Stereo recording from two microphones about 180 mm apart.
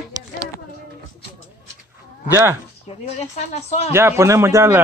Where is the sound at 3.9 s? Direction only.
15° right (ahead or behind).